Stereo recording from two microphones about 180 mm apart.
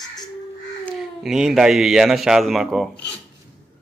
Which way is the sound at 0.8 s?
Centre (ahead or behind).